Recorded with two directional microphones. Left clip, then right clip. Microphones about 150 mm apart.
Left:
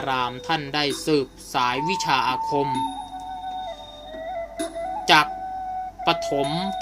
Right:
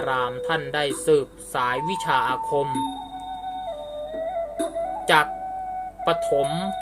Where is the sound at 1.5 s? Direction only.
50° left (ahead or behind).